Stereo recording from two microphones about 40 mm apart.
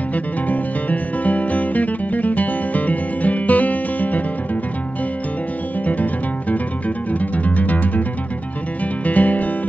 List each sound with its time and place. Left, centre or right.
0.1 s music: left
7.2 s music: left
9.0 s music: left